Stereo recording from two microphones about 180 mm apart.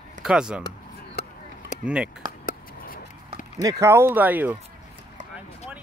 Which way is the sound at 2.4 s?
50° left (ahead or behind).